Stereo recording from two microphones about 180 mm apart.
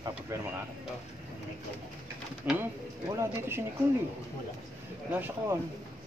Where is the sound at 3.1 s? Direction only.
15° right (ahead or behind).